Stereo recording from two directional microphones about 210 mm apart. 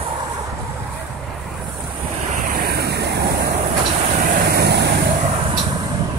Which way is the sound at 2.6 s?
50° right (ahead or behind).